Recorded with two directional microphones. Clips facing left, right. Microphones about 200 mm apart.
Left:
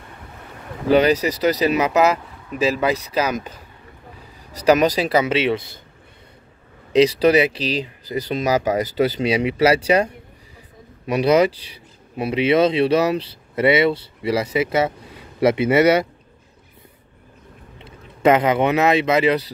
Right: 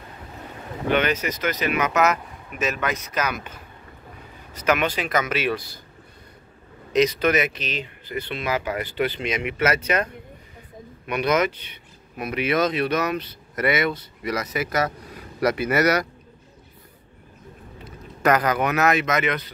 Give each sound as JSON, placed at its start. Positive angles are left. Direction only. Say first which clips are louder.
{"t": 0.8, "sound": "speech", "louder": "left 7 dB", "side_deg": 35}
{"t": 6.9, "sound": "speech", "louder": "left 5 dB", "side_deg": 30}
{"t": 11.1, "sound": "speech", "louder": "left 6 dB", "side_deg": 30}
{"t": 17.7, "sound": "speech", "louder": "right 2 dB", "side_deg": 25}